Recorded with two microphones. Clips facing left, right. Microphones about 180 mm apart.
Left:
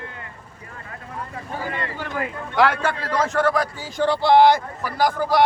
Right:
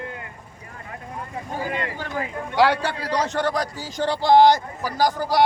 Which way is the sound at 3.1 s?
40° right (ahead or behind).